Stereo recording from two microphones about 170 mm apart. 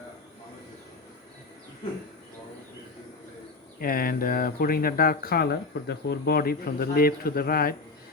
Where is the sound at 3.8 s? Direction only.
60° left (ahead or behind).